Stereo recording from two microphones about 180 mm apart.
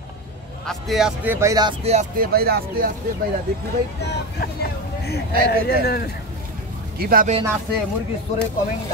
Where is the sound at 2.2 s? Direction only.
60° right (ahead or behind).